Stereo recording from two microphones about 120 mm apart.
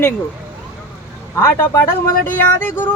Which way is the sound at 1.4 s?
25° left (ahead or behind).